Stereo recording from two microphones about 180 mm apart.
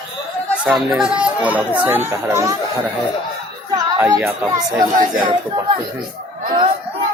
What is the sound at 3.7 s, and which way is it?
Speech, 20° right (ahead or behind).